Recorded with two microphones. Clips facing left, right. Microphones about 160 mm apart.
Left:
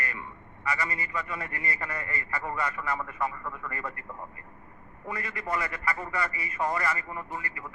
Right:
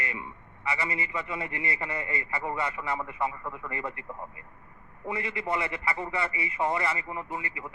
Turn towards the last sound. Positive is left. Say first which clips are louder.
# right 2 dB
turn(degrees=-20)  # may be behind; listen again after turning